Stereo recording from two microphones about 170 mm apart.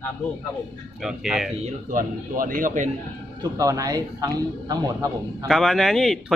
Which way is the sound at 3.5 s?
20° right (ahead or behind).